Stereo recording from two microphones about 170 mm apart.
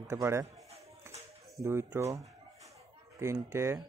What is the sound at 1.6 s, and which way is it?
Speech, 15° right (ahead or behind).